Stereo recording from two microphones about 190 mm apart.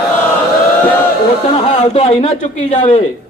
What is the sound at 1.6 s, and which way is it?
A man's voice, 35° left (ahead or behind).